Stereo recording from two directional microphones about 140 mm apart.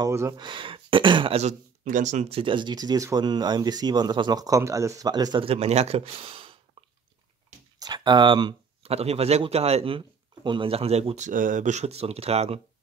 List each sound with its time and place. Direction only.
0.0 s speech: 25° right (ahead or behind)
0.4 s speech: 35° right (ahead or behind)
1.4 s speech: 60° right (ahead or behind); by 5.5 s 30° right (ahead or behind)
5.5 s speech: 50° right (ahead or behind)
7.8 s a sound: 30° right (ahead or behind)
8.9 s speech: 45° right (ahead or behind)